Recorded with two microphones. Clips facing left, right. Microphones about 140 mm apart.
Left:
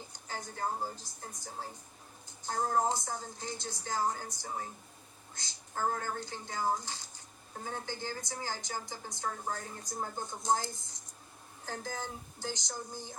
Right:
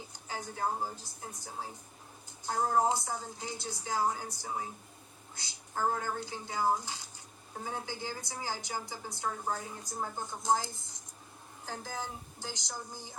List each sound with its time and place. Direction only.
0.1 s a woman's voice: 10° right (ahead or behind)
2.5 s a woman's voice: 10° right (ahead or behind)